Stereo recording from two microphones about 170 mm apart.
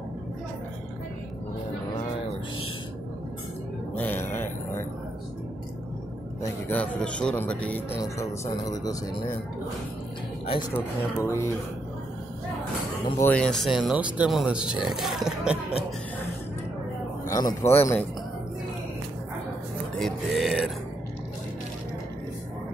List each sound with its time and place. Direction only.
3.9 s a sound: 10° left (ahead or behind)
6.4 s speech: 10° left (ahead or behind)
8.0 s speech: 20° left (ahead or behind)
10.7 s speech: 15° left (ahead or behind)
13.2 s speech: 5° left (ahead or behind)
17.3 s speech: 20° left (ahead or behind)
20.0 s a sound: centre (ahead or behind)